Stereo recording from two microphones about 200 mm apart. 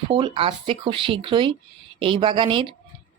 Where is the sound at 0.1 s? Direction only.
25° right (ahead or behind).